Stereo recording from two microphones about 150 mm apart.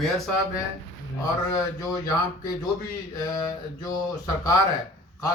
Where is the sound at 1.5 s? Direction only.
25° left (ahead or behind).